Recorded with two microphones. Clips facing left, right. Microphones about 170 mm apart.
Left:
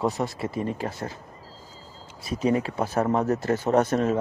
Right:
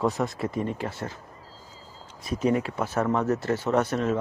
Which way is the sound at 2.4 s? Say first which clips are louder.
Left 1 dB; 30° left (ahead or behind).